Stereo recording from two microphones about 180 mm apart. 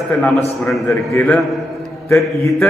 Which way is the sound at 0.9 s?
10° left (ahead or behind).